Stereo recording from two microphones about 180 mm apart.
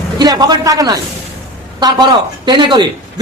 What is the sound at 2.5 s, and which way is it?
Speech, 25° right (ahead or behind).